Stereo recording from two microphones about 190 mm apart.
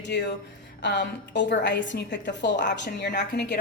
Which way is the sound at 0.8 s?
65° left (ahead or behind).